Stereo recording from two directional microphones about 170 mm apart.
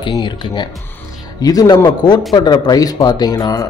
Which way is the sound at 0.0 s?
30° left (ahead or behind).